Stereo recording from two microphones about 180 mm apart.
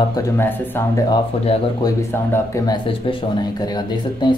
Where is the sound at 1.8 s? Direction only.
15° left (ahead or behind).